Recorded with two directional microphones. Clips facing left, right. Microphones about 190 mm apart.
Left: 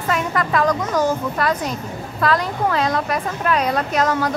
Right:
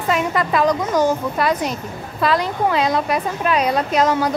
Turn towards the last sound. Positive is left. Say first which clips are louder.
# right 2 dB
turn(degrees=-20)  # may be behind; listen again after turning